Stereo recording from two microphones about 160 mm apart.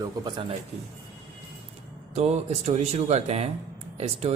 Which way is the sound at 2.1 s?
45° right (ahead or behind).